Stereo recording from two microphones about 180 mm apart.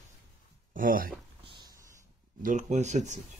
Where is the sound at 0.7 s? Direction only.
50° right (ahead or behind).